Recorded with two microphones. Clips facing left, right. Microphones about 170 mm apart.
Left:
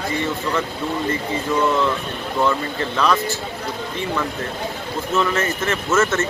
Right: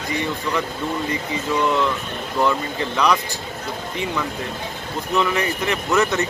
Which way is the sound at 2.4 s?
15° right (ahead or behind).